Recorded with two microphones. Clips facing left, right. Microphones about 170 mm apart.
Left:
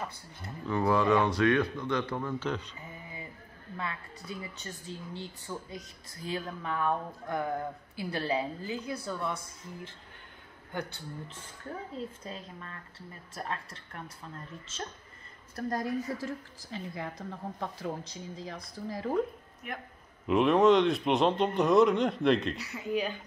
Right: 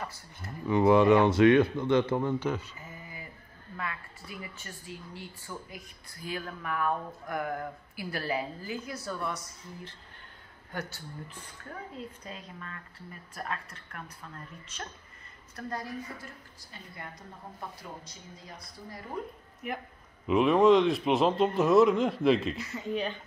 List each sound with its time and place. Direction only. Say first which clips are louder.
0.7 s speech: right 5 dB; 20° right (ahead or behind)
2.4 s speech: right 2 dB; 10° right (ahead or behind)
2.8 s a sound: left 1 dB; 20° left (ahead or behind)
3.7 s speech: even; 25° left (ahead or behind)
12.2 s speech: left 1 dB; 30° left (ahead or behind)
15.5 s a woman's voice: left 5 dB; 45° left (ahead or behind)
16.2 s a woman's voice: left 10 dB; 90° left
20.2 s a man's voice: right 1 dB; centre (ahead or behind)